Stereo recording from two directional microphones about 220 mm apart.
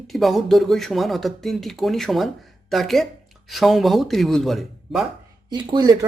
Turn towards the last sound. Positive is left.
turn(degrees=-20)  # may be behind; listen again after turning